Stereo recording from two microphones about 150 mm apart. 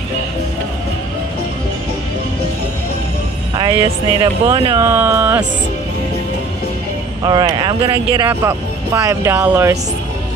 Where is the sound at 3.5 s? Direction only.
35° right (ahead or behind).